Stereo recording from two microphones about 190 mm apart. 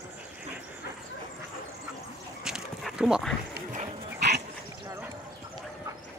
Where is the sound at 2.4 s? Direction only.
Centre (ahead or behind).